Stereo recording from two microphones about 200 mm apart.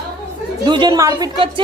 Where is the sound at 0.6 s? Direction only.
20° right (ahead or behind).